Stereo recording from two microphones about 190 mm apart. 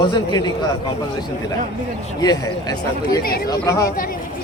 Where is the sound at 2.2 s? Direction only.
20° left (ahead or behind).